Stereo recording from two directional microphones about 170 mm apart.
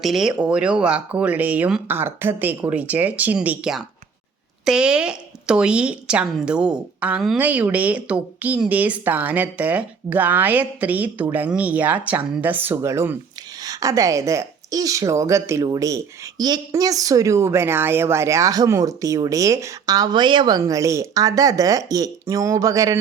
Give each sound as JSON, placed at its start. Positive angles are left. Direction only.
{"t": 0.0, "sound": "a woman's voice", "side_deg": 0}